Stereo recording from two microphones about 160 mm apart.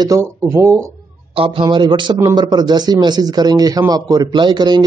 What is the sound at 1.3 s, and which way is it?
Speech, 35° right (ahead or behind).